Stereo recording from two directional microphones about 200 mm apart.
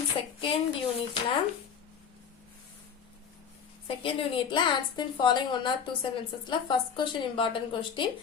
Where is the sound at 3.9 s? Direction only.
25° left (ahead or behind).